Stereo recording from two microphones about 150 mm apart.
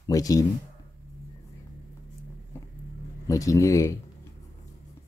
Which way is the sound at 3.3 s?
20° left (ahead or behind).